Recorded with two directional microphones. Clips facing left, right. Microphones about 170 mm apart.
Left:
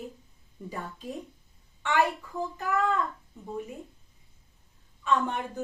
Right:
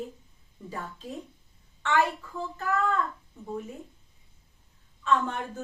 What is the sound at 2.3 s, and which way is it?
Speech, 15° left (ahead or behind).